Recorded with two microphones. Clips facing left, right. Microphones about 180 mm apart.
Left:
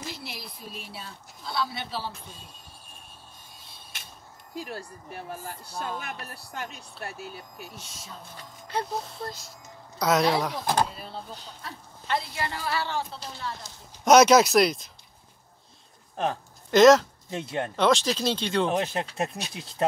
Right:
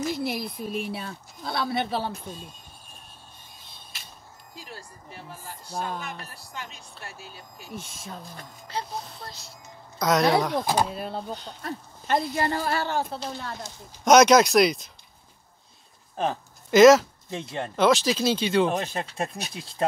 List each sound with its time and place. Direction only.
0.1 s speech: 50° right (ahead or behind)
4.6 s speech: 60° left (ahead or behind)
7.7 s speech: 55° right (ahead or behind)
8.7 s speech: 55° left (ahead or behind)
9.9 s speech: centre (ahead or behind)
11.0 s speech: 55° right (ahead or behind)
14.0 s speech: 5° left (ahead or behind)
16.2 s speech: centre (ahead or behind)